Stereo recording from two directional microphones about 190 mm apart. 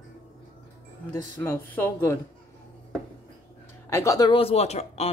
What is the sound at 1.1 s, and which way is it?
Speech, 10° left (ahead or behind).